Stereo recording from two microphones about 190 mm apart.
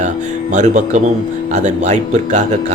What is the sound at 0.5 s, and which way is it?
A man's voice, 40° right (ahead or behind).